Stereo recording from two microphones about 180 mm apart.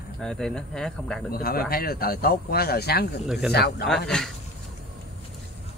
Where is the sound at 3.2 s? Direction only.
5° right (ahead or behind).